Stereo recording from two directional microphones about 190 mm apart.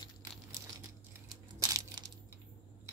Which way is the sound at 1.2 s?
20° right (ahead or behind).